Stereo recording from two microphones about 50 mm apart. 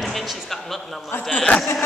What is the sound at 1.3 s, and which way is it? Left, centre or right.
Speech, left.